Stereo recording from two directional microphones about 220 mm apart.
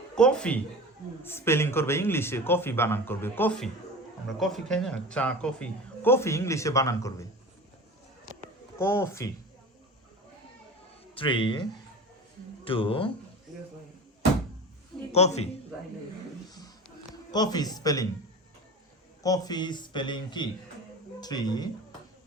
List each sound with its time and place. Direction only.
0.2 s a man's voice: 5° left (ahead or behind)
8.8 s a man's voice: 10° left (ahead or behind)
11.1 s speech: 25° left (ahead or behind)
12.6 s a man's voice: 25° left (ahead or behind)
15.1 s a man's voice: 30° left (ahead or behind)
17.3 s a man's voice: 20° left (ahead or behind)
19.2 s a man's voice: 15° left (ahead or behind)